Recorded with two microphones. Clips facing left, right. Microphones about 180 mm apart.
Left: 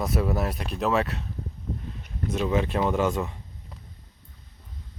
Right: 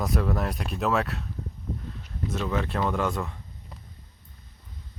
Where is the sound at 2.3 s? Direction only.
15° left (ahead or behind).